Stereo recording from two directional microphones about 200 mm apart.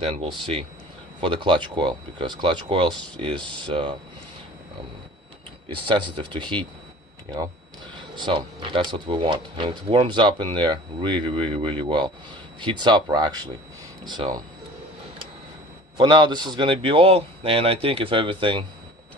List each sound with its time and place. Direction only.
1.2 s speech: 25° right (ahead or behind)
5.7 s speech: 25° right (ahead or behind)
8.2 s speech: 25° right (ahead or behind)
16.0 s speech: 25° right (ahead or behind)